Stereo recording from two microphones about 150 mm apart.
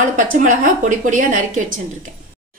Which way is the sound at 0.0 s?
60° right (ahead or behind).